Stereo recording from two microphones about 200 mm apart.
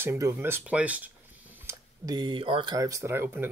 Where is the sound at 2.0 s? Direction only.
20° right (ahead or behind).